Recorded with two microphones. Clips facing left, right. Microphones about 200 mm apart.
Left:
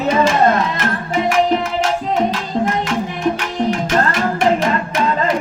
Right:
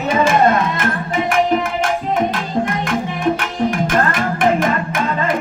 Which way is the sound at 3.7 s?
50° right (ahead or behind).